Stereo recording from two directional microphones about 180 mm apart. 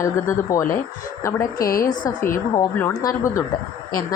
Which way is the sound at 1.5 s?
55° left (ahead or behind).